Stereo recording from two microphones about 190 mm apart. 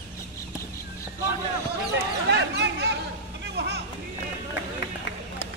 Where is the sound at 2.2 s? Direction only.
65° right (ahead or behind).